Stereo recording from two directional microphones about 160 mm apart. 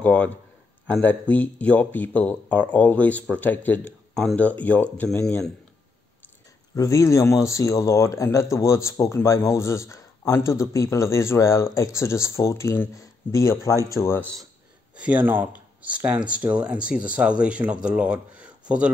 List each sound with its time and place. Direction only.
0.0 s speech: 10° left (ahead or behind)
6.7 s speech: 20° left (ahead or behind)
15.0 s speech: 10° right (ahead or behind)